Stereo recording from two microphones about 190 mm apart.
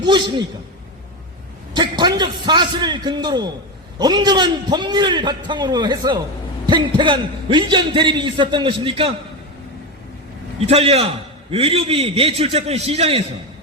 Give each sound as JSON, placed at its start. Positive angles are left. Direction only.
{"t": 0.0, "sound": "a man's voice", "side_deg": -25}
{"t": 1.7, "sound": "a man's voice", "side_deg": -25}
{"t": 10.6, "sound": "a man's voice", "side_deg": -30}